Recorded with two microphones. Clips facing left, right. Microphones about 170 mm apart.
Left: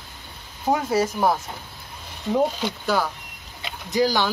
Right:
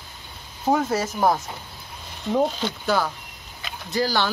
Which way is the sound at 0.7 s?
10° left (ahead or behind).